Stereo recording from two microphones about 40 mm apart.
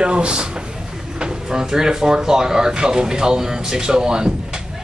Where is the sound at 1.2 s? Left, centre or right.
Centre.